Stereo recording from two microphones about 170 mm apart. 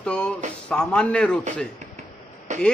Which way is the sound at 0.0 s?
5° left (ahead or behind).